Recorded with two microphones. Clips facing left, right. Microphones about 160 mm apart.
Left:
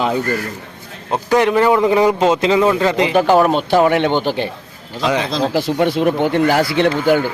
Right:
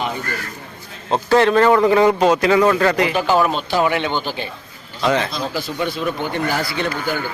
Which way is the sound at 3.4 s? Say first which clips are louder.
Left 5 dB; 60° left (ahead or behind).